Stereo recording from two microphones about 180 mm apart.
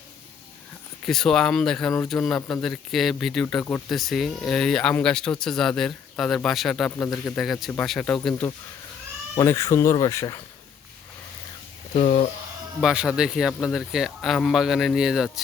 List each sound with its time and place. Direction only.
1.0 s speech: centre (ahead or behind)
9.3 s speech: 20° left (ahead or behind)
11.9 s speech: 40° left (ahead or behind)
12.8 s speech: 5° right (ahead or behind)